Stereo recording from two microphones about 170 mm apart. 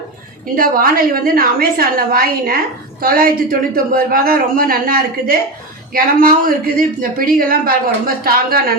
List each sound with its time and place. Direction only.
0.5 s a woman's voice: 55° right (ahead or behind)